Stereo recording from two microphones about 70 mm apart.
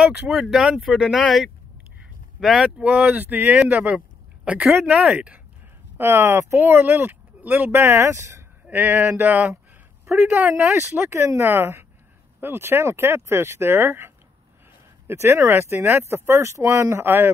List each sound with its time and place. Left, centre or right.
0.0 s speech: centre
2.4 s speech: centre
2.8 s speech: centre
5.9 s speech: right
8.6 s speech: right
11.1 s speech: right